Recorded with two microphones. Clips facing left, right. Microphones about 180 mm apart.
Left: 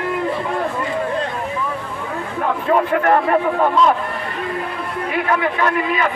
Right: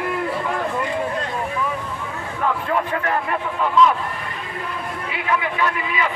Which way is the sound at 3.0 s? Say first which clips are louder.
Left 8 dB; 50° left (ahead or behind).